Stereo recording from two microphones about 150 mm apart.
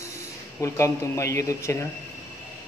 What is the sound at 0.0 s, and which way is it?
Speech, 20° left (ahead or behind).